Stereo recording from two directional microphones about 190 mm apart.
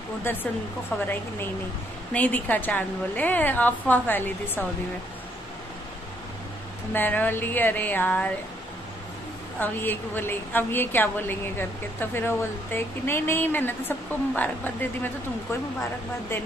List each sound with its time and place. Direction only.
0.2 s a woman's voice: 10° left (ahead or behind)
2.1 s a woman's voice: 10° left (ahead or behind)
6.9 s a woman's voice: 10° left (ahead or behind)
9.6 s a woman's voice: 10° left (ahead or behind)